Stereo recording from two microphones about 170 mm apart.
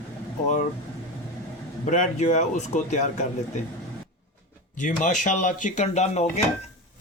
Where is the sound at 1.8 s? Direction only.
45° left (ahead or behind).